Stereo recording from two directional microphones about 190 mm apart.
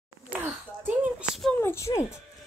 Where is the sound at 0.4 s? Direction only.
10° right (ahead or behind).